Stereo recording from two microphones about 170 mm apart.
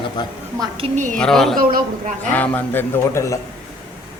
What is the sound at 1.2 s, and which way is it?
Speech, 5° left (ahead or behind).